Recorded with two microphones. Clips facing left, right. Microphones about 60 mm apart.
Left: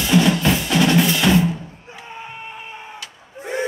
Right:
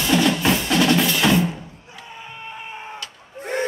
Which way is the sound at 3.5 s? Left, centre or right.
Right.